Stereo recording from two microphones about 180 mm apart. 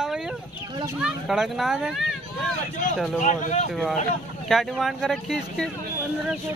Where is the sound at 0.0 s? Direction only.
5° right (ahead or behind).